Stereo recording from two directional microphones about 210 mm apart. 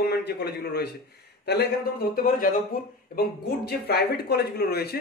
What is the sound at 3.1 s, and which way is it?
A man's voice, 45° left (ahead or behind).